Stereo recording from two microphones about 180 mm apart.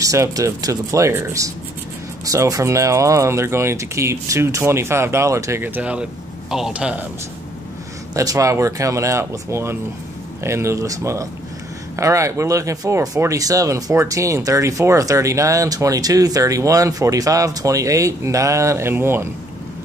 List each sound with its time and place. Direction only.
0.0 s speech: 20° right (ahead or behind)
8.1 s speech: 20° right (ahead or behind)